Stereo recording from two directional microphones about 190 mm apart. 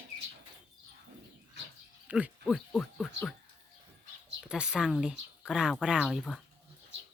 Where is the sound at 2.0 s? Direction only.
5° right (ahead or behind).